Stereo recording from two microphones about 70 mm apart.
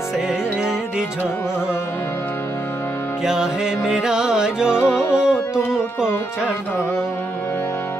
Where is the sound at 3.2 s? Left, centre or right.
Centre.